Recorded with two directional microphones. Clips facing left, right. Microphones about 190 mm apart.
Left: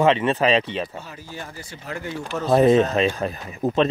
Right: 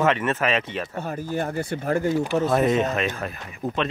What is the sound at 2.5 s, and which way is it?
Speech, 30° left (ahead or behind).